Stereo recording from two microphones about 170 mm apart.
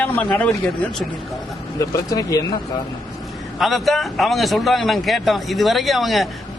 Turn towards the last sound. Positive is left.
turn(degrees=0)  # may be behind; listen again after turning